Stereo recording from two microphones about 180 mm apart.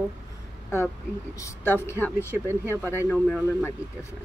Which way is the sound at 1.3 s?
15° left (ahead or behind).